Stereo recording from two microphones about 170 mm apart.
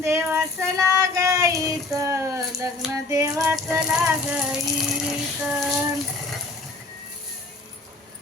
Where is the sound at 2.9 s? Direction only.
20° right (ahead or behind).